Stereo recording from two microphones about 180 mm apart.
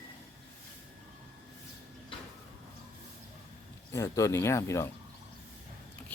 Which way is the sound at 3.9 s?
15° left (ahead or behind).